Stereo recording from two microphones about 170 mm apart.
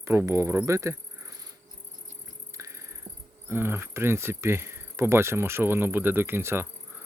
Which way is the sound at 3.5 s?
15° right (ahead or behind).